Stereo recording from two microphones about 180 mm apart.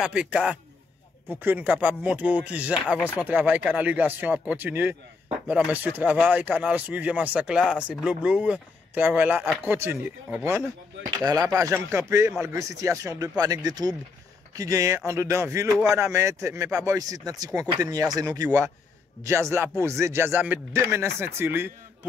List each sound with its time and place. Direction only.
0.0 s a man's voice: 5° right (ahead or behind)
19.8 s speech: 15° right (ahead or behind)